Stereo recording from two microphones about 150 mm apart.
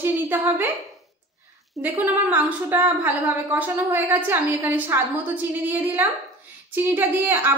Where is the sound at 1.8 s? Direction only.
10° right (ahead or behind).